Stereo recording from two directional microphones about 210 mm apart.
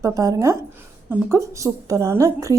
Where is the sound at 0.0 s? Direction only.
15° right (ahead or behind).